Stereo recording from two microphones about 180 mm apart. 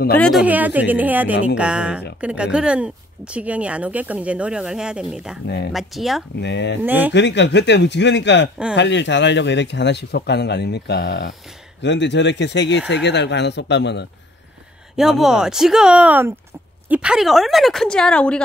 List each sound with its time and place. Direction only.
0.1 s speech: 5° left (ahead or behind)
0.4 s speech: 10° right (ahead or behind)
6.4 s speech: 75° left (ahead or behind)
6.8 s speech: 10° right (ahead or behind)
7.1 s speech: 75° left (ahead or behind)
15.0 s speech: centre (ahead or behind)